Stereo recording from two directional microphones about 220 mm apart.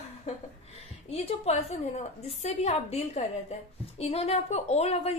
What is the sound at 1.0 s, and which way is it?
A woman's voice, 30° left (ahead or behind).